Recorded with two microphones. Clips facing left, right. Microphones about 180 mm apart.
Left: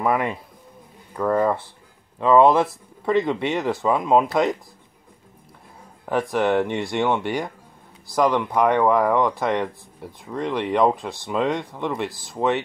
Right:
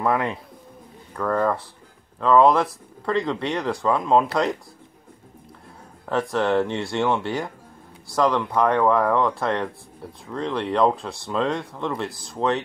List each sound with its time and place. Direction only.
0.0 s speech: 10° left (ahead or behind)
6.0 s speech: 15° left (ahead or behind)
11.9 s speech: centre (ahead or behind)